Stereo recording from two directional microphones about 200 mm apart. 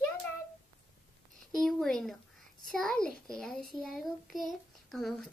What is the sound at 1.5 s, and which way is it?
A child's voice, centre (ahead or behind).